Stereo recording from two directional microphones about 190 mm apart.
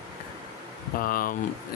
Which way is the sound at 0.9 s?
50° left (ahead or behind).